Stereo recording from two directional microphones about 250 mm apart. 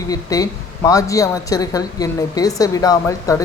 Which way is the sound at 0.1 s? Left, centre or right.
Centre.